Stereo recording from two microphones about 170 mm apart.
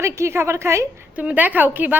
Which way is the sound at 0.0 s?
15° right (ahead or behind).